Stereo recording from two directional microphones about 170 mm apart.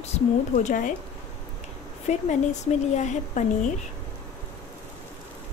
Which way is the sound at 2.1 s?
45° left (ahead or behind).